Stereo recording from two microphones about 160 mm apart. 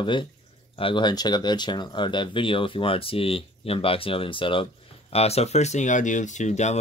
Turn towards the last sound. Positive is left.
turn(degrees=45)  # may be behind; listen again after turning